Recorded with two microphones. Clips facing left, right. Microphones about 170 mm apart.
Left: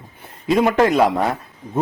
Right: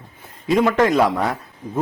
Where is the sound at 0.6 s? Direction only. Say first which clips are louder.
Left 1 dB; 25° left (ahead or behind).